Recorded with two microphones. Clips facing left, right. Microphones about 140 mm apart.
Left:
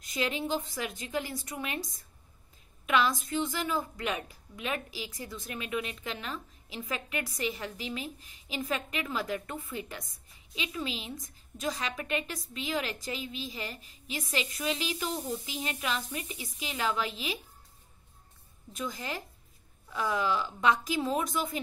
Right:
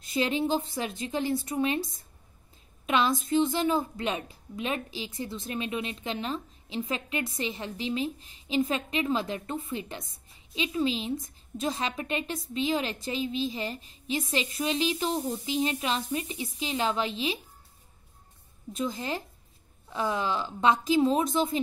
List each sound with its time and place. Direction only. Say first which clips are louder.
0.0 s a woman's voice: right 5 dB; 30° right (ahead or behind)
18.7 s a woman's voice: right 5 dB; 25° right (ahead or behind)